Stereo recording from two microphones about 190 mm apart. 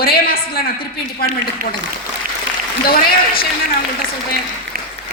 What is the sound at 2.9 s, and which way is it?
Speech, 50° left (ahead or behind).